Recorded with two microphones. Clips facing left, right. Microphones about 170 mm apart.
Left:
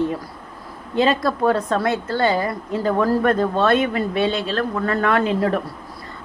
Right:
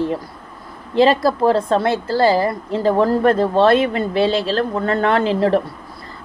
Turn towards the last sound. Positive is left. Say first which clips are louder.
# right 3 dB
turn(degrees=-30)  # may be behind; listen again after turning